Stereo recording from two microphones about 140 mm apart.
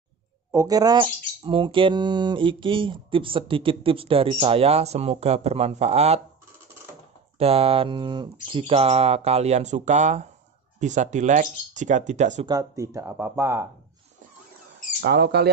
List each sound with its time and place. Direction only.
0.5 s speech: 25° right (ahead or behind); by 6.2 s 50° right (ahead or behind)
7.3 s speech: 45° right (ahead or behind)
12.4 s speech: 25° right (ahead or behind)